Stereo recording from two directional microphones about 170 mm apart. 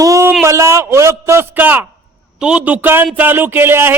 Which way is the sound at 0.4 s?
15° right (ahead or behind).